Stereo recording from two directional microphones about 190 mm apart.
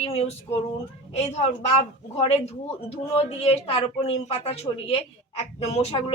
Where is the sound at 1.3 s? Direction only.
35° left (ahead or behind).